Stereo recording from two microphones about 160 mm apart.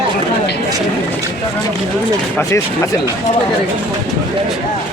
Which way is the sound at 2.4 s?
15° left (ahead or behind).